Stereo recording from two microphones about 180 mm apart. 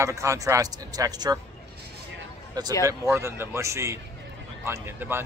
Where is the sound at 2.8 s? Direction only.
15° right (ahead or behind).